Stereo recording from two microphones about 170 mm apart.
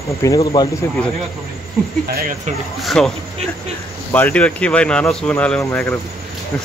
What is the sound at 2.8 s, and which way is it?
Speech, centre (ahead or behind).